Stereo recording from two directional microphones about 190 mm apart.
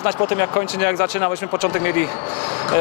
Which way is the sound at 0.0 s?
20° left (ahead or behind).